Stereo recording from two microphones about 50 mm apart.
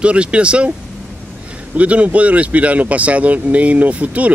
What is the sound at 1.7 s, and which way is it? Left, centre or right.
Speech, right.